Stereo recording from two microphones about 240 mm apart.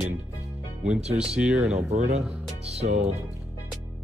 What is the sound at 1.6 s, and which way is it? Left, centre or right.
Speech, right.